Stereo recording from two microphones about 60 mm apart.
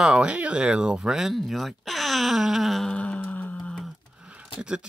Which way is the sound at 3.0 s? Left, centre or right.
Left.